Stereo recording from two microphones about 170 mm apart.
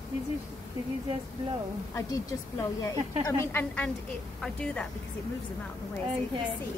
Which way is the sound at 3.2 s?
10° left (ahead or behind).